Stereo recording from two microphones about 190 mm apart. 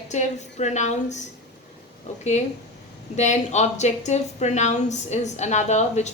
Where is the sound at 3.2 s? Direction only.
35° left (ahead or behind).